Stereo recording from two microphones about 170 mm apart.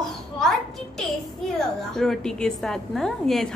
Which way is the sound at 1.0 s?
Centre (ahead or behind).